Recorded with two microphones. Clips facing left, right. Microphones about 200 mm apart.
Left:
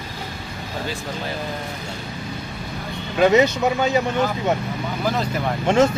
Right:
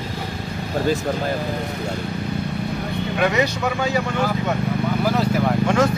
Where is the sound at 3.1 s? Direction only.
25° left (ahead or behind).